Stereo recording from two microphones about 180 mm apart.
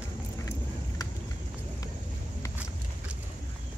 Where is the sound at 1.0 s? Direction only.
20° left (ahead or behind).